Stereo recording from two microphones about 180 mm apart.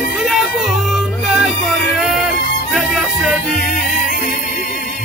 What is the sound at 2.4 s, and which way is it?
Music, 55° left (ahead or behind).